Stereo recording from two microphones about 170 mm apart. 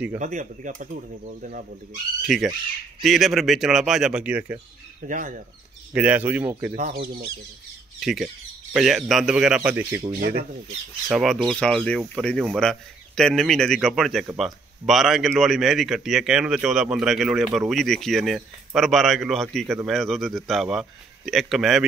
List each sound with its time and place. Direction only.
0.2 s speech: 45° right (ahead or behind)
2.2 s speech: centre (ahead or behind)
5.0 s speech: 50° right (ahead or behind)
5.9 s speech: 10° right (ahead or behind)
6.7 s speech: 55° right (ahead or behind)
8.0 s speech: centre (ahead or behind)
11.1 s speech: centre (ahead or behind)